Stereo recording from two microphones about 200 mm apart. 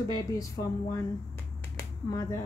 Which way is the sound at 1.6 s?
15° left (ahead or behind).